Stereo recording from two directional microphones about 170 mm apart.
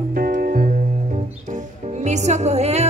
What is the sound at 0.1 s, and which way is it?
Music, 55° right (ahead or behind).